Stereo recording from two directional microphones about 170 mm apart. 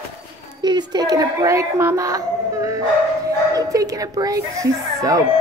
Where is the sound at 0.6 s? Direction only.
25° right (ahead or behind).